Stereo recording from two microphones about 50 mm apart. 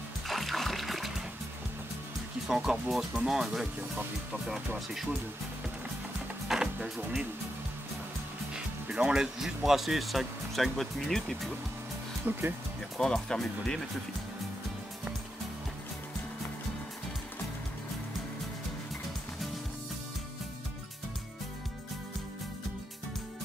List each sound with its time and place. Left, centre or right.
0.3 s music: centre
2.4 s speech: centre
6.8 s speech: right
8.5 s music: right
9.1 s speech: centre
12.3 s speech: right
12.9 s speech: centre